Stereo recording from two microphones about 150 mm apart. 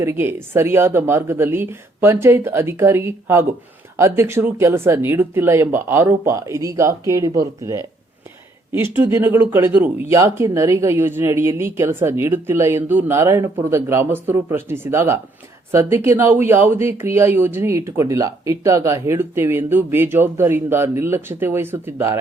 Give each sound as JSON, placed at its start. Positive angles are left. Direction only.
{"t": 0.0, "sound": "speech", "side_deg": -15}
{"t": 9.0, "sound": "speech", "side_deg": -15}